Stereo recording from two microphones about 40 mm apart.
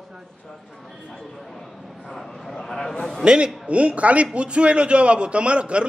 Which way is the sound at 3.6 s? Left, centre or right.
Right.